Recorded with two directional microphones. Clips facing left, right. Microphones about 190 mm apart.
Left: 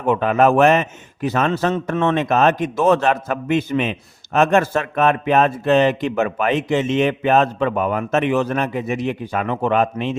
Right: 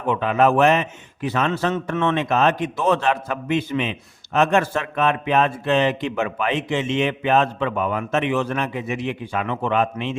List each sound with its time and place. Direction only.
0.0 s a man's voice: 45° left (ahead or behind)